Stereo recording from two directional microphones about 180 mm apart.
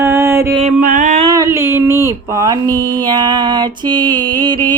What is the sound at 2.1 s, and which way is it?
Music, 20° right (ahead or behind).